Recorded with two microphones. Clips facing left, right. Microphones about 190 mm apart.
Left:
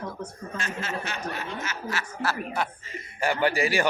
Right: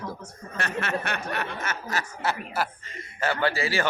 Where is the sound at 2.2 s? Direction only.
20° right (ahead or behind).